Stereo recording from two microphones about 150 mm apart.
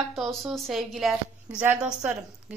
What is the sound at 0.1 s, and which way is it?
A woman's voice, centre (ahead or behind).